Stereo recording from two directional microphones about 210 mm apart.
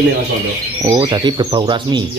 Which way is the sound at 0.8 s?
25° right (ahead or behind).